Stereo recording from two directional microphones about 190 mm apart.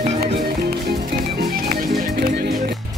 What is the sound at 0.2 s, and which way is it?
Music, 55° right (ahead or behind).